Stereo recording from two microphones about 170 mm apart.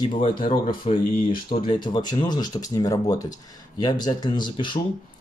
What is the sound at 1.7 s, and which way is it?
Speech, 25° left (ahead or behind).